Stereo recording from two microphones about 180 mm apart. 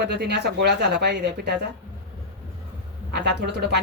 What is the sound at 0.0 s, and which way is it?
Speech, 65° right (ahead or behind).